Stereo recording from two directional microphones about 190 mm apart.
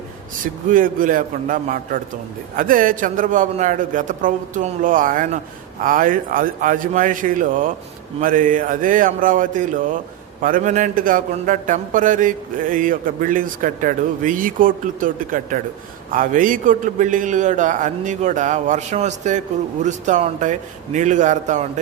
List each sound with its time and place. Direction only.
0.4 s a man's voice: 45° right (ahead or behind)